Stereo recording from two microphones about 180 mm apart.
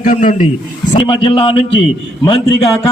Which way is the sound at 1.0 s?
30° left (ahead or behind).